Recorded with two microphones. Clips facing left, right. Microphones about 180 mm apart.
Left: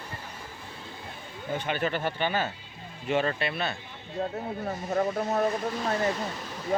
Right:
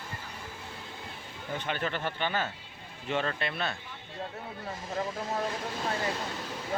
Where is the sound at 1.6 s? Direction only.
10° left (ahead or behind).